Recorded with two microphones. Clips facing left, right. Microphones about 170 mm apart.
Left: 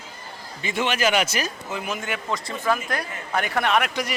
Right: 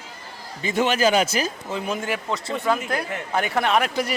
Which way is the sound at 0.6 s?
40° right (ahead or behind).